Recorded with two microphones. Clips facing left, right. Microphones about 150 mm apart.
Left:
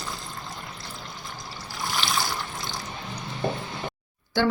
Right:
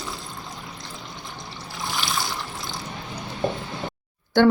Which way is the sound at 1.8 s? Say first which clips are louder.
Even; centre (ahead or behind).